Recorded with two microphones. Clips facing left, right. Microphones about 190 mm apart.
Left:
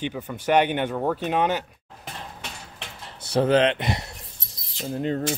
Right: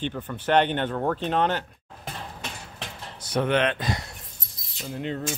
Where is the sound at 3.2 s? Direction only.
30° left (ahead or behind).